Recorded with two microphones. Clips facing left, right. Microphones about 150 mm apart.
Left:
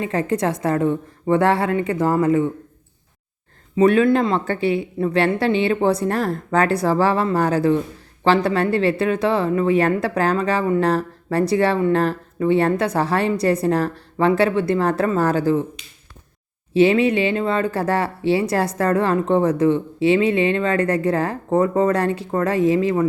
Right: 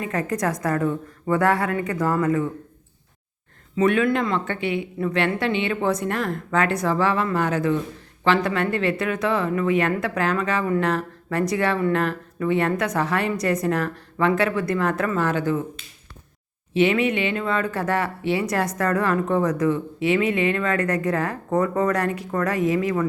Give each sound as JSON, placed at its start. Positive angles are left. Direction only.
{"t": 0.0, "sound": "speech", "side_deg": 30}
{"t": 3.8, "sound": "speech", "side_deg": 35}
{"t": 16.7, "sound": "speech", "side_deg": 30}